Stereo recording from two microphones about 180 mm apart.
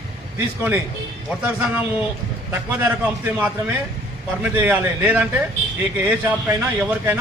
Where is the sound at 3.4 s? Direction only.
10° right (ahead or behind).